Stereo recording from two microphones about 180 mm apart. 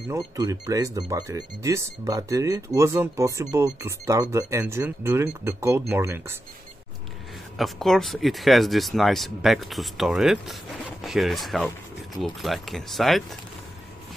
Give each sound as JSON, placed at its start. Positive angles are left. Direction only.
{"t": 0.1, "sound": "speech", "side_deg": -20}
{"t": 7.5, "sound": "speech", "side_deg": 0}